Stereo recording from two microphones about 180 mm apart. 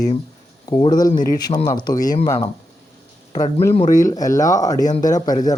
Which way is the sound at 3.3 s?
15° left (ahead or behind).